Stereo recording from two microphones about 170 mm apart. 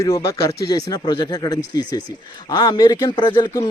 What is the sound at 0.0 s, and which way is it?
Speech, 15° left (ahead or behind).